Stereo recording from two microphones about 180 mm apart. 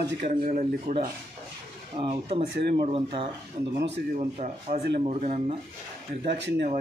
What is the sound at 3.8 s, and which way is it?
Speech, 75° right (ahead or behind).